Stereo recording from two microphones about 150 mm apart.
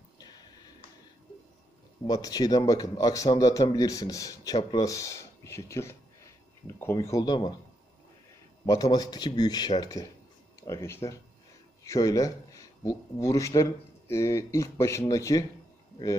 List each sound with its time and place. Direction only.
0.2 s a sound: 25° left (ahead or behind)
2.0 s speech: 25° left (ahead or behind)
8.6 s speech: 25° left (ahead or behind)